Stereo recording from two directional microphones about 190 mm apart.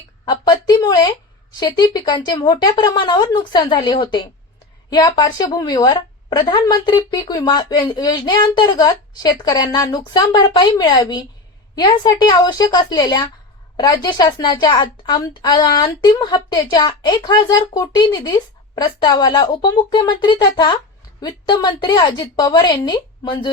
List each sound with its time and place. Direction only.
0.3 s a woman's voice: 20° left (ahead or behind)